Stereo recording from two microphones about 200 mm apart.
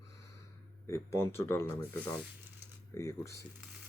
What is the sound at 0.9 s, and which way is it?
Speech, 15° left (ahead or behind).